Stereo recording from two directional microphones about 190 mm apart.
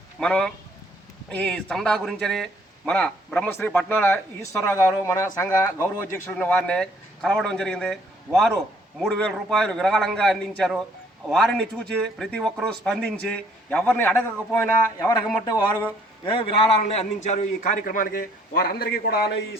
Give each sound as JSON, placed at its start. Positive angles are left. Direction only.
{"t": 0.2, "sound": "a man's voice", "side_deg": 5}